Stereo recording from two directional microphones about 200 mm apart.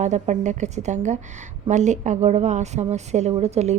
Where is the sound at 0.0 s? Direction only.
35° right (ahead or behind).